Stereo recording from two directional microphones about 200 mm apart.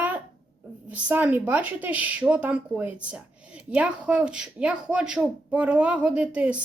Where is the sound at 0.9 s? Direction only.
5° right (ahead or behind).